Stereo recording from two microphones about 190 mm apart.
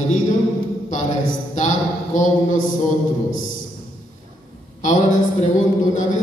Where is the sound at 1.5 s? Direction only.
40° left (ahead or behind).